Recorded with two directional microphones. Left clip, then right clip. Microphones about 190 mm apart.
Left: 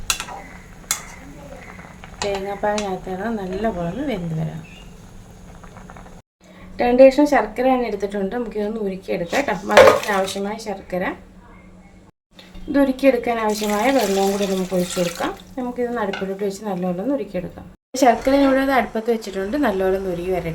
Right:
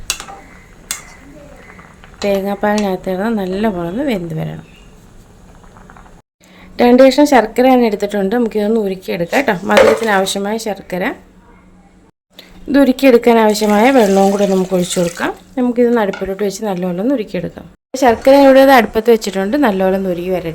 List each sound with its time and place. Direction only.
2.5 s speech: 60° right (ahead or behind)
6.7 s speech: 60° right (ahead or behind)
12.7 s speech: 60° right (ahead or behind)
14.7 s speech: 90° right
15.2 s speech: 65° right (ahead or behind)
18.0 s speech: 40° right (ahead or behind)